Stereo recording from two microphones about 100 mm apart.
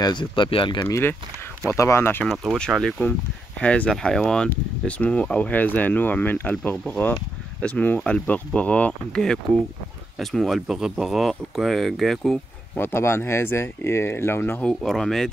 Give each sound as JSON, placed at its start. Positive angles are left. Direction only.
{"t": 0.0, "sound": "speech", "side_deg": 50}
{"t": 0.8, "sound": "speech", "side_deg": 30}
{"t": 2.2, "sound": "speech", "side_deg": 0}
{"t": 10.1, "sound": "speech", "side_deg": 0}
{"t": 12.7, "sound": "speech", "side_deg": 25}
{"t": 14.6, "sound": "speech", "side_deg": 5}